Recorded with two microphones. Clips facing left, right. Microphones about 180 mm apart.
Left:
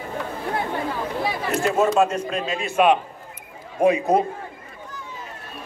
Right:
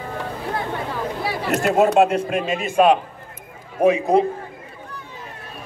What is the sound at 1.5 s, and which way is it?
Speech, 65° right (ahead or behind).